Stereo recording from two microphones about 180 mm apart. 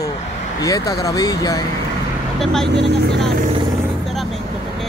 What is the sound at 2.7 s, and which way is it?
Speech, 70° right (ahead or behind).